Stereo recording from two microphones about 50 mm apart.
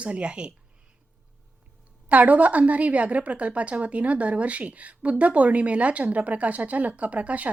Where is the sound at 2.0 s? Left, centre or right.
Right.